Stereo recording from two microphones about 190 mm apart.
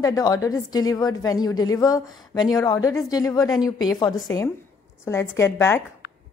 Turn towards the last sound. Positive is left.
turn(degrees=15)  # may be behind; listen again after turning